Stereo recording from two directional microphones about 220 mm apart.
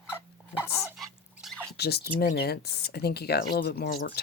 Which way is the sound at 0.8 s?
5° right (ahead or behind).